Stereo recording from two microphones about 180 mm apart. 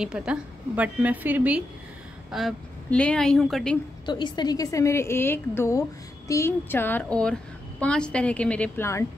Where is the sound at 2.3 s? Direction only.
5° left (ahead or behind).